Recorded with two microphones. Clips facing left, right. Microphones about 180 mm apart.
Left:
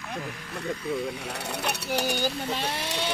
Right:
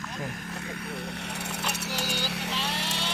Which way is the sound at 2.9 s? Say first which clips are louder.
Left 4 dB; 60° left (ahead or behind).